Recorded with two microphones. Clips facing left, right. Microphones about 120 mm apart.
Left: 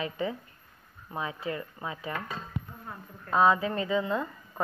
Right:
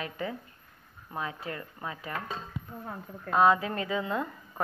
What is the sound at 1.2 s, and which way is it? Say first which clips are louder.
Speech: left 2 dB; 15° left (ahead or behind).